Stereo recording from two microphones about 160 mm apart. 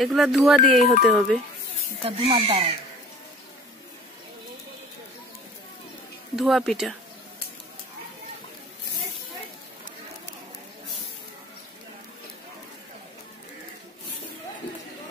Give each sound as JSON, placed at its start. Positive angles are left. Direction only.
{"t": 0.0, "sound": "speech", "side_deg": 0}
{"t": 2.0, "sound": "speech", "side_deg": -35}
{"t": 6.3, "sound": "speech", "side_deg": 0}